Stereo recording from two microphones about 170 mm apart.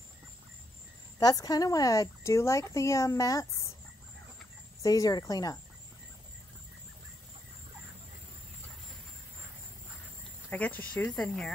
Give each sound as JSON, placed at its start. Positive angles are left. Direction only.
{"t": 1.2, "sound": "a woman's voice", "side_deg": 20}
{"t": 4.8, "sound": "a woman's voice", "side_deg": 20}
{"t": 10.5, "sound": "speech", "side_deg": 10}